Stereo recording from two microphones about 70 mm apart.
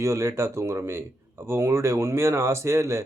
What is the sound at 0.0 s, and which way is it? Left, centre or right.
Speech, right.